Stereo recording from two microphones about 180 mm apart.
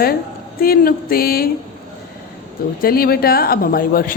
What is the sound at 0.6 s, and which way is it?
Speech, 55° left (ahead or behind).